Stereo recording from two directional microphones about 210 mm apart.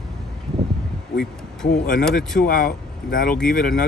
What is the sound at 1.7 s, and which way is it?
Speech, 40° left (ahead or behind).